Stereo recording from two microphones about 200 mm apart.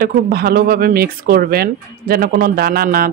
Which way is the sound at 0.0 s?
50° right (ahead or behind).